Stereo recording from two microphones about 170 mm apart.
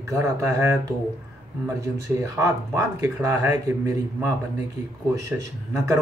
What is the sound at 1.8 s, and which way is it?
Speech, 15° right (ahead or behind).